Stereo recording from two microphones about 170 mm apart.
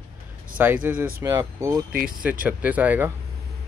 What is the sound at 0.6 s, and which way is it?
Speech, 10° right (ahead or behind).